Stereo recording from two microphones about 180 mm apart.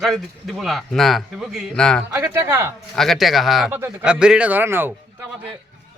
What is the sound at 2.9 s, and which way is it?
Speech, centre (ahead or behind).